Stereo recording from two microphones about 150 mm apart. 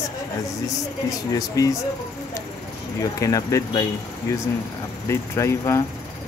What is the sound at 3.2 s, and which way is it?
Speech, 25° left (ahead or behind).